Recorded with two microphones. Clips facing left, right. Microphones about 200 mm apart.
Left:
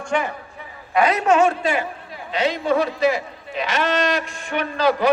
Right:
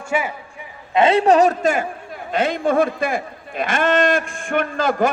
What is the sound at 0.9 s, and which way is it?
A man's voice, 25° right (ahead or behind).